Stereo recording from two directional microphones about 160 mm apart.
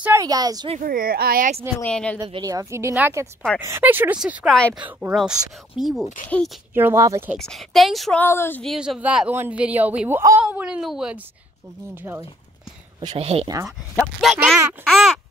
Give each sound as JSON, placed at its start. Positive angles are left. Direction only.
{"t": 0.0, "sound": "speech", "side_deg": -20}
{"t": 0.8, "sound": "speech", "side_deg": -65}
{"t": 1.8, "sound": "speech", "side_deg": 5}
{"t": 2.1, "sound": "speech", "side_deg": -25}
{"t": 6.7, "sound": "speech", "side_deg": -15}
{"t": 7.3, "sound": "speech", "side_deg": 0}
{"t": 8.2, "sound": "speech", "side_deg": 15}
{"t": 8.6, "sound": "speech", "side_deg": -5}
{"t": 13.1, "sound": "speech", "side_deg": -40}
{"t": 14.4, "sound": "speech", "side_deg": -5}